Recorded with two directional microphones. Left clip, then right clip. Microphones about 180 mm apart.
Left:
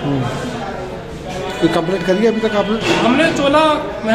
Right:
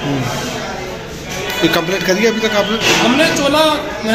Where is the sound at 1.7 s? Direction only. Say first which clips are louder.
Right 1 dB; 25° left (ahead or behind).